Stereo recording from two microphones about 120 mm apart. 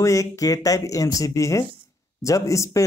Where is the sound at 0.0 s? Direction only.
25° left (ahead or behind).